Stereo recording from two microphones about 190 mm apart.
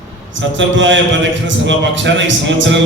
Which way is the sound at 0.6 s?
75° right (ahead or behind).